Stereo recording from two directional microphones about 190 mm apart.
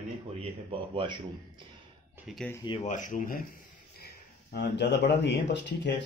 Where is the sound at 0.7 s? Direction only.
25° right (ahead or behind).